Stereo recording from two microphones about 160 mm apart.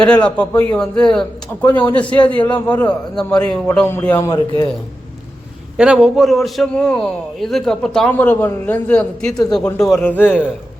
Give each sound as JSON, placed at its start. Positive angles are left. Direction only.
{"t": 0.0, "sound": "a man's voice", "side_deg": 5}
{"t": 4.3, "sound": "a man's voice", "side_deg": 25}
{"t": 5.7, "sound": "a man's voice", "side_deg": -5}